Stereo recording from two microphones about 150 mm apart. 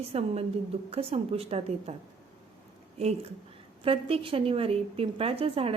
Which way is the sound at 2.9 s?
45° right (ahead or behind).